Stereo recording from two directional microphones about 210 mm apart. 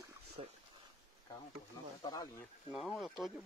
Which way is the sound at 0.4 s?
30° right (ahead or behind).